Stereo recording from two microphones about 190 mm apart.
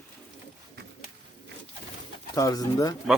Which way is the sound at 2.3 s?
20° left (ahead or behind).